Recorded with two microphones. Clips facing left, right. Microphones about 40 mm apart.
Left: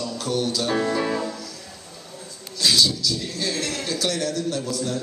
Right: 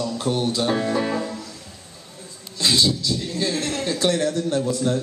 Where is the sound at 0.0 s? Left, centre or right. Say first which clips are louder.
Right 2 dB; right.